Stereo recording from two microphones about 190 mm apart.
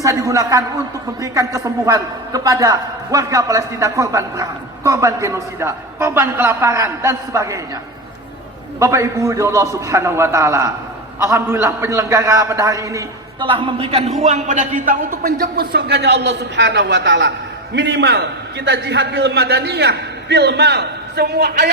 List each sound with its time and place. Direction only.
0.0 s a man's voice: 15° right (ahead or behind)
8.8 s a man's voice: 15° right (ahead or behind)
13.5 s a man's voice: 25° right (ahead or behind); by 21.7 s 60° right (ahead or behind)